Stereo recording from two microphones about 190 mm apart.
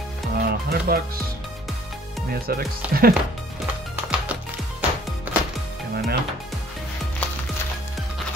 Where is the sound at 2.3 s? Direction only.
55° right (ahead or behind).